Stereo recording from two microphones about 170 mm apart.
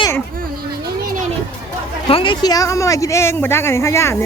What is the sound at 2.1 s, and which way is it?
A woman's voice, 30° left (ahead or behind).